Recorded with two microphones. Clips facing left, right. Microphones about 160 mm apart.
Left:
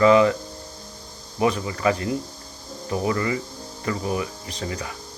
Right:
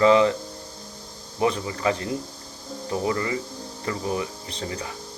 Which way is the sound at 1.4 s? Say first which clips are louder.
Left 2 dB; 30° right (ahead or behind).